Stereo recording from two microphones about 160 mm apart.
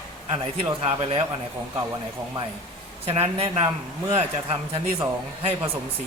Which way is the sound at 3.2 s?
40° right (ahead or behind).